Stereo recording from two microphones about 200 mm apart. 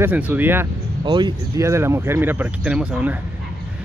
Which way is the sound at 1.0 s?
25° right (ahead or behind).